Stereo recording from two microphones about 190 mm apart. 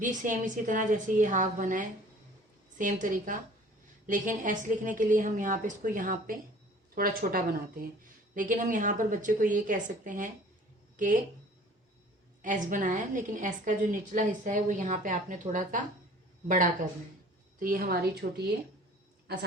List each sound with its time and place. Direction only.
0.0 s a woman's voice: 40° right (ahead or behind)
12.4 s a woman's voice: 45° right (ahead or behind)
17.6 s a woman's voice: 50° right (ahead or behind)